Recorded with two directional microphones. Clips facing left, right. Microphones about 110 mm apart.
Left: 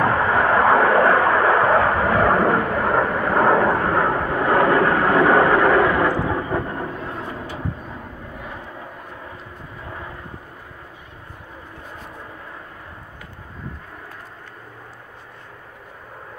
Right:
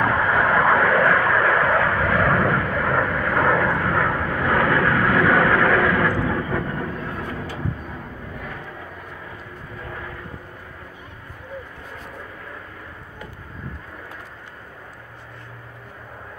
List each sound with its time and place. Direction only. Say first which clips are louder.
0.2 s vehicle: left 2 dB; 30° left (ahead or behind)